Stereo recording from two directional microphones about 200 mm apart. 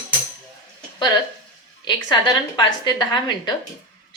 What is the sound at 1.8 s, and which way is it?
A woman's voice, 20° left (ahead or behind).